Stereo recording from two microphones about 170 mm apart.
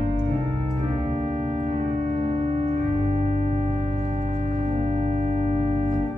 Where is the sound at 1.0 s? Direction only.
45° right (ahead or behind).